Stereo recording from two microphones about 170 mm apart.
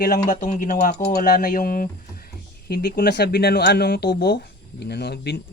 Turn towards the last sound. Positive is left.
turn(degrees=75)  # may be behind; listen again after turning